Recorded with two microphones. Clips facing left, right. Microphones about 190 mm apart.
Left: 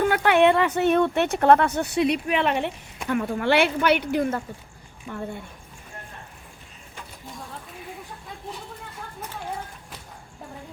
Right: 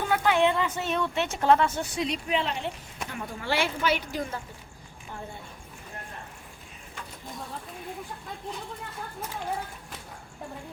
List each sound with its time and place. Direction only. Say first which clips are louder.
0.0 s speech: left 5 dB; 65° left (ahead or behind)